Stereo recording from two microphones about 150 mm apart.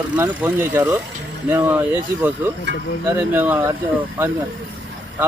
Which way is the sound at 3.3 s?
15° right (ahead or behind).